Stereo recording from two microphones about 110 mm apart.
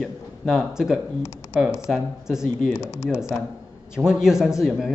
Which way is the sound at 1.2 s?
25° left (ahead or behind).